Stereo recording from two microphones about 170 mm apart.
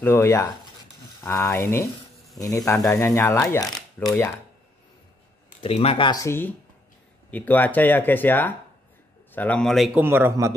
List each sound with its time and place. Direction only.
0.0 s speech: 15° left (ahead or behind)
2.4 s speech: 20° left (ahead or behind)
3.7 s speech: centre (ahead or behind)
5.6 s speech: 35° left (ahead or behind); by 9.8 s 5° left (ahead or behind)
9.9 s a man's voice: 15° right (ahead or behind)